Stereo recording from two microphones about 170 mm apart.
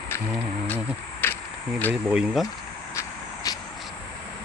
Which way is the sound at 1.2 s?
10° left (ahead or behind).